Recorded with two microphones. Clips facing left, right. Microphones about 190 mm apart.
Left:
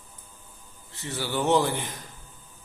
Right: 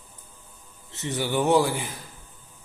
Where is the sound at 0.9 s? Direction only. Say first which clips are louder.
Right 4 dB; 20° right (ahead or behind).